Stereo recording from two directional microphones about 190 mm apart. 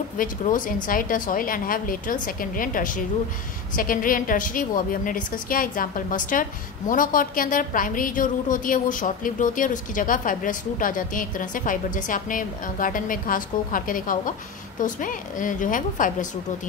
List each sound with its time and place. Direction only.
0.2 s a woman's voice: 45° left (ahead or behind)